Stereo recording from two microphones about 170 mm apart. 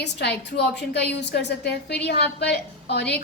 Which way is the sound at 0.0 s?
75° left (ahead or behind).